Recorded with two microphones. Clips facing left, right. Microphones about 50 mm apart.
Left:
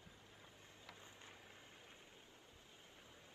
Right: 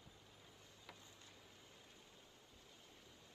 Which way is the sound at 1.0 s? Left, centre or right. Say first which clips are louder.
Left 4 dB; left.